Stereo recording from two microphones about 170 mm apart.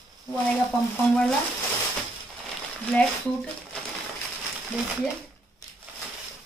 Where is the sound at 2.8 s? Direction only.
5° left (ahead or behind).